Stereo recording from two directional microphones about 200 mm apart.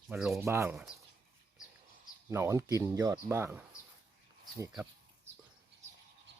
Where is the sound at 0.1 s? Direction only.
5° right (ahead or behind).